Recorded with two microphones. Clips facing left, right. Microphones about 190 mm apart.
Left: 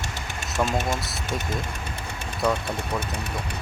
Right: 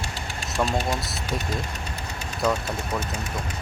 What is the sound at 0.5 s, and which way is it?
Speech, 25° left (ahead or behind).